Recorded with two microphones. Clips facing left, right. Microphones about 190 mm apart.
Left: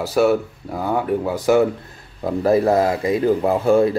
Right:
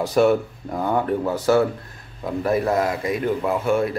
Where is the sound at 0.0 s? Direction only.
5° left (ahead or behind).